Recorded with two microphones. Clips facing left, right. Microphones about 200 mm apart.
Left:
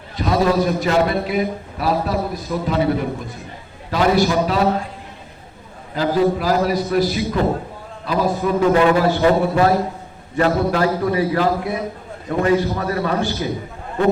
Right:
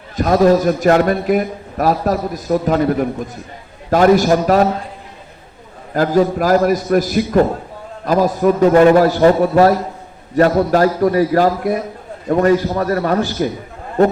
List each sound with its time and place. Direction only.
0.2 s a man's voice: 45° right (ahead or behind)
3.8 s a man's voice: 45° right (ahead or behind)
5.9 s a man's voice: 50° right (ahead or behind)